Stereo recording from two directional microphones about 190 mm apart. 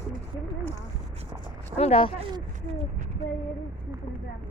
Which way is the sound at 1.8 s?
30° left (ahead or behind).